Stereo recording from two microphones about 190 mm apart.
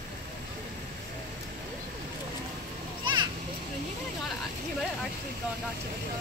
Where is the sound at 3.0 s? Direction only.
25° right (ahead or behind).